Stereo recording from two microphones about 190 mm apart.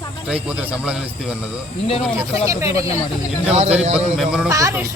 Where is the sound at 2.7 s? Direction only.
30° left (ahead or behind).